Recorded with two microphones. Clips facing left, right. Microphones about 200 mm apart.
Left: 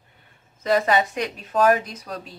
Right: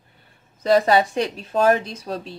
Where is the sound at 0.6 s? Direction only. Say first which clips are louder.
Right 3 dB; 35° right (ahead or behind).